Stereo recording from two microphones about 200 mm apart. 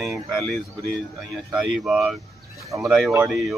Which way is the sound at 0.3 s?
Centre (ahead or behind).